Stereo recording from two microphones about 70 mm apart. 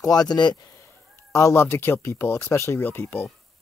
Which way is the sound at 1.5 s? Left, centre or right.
Left.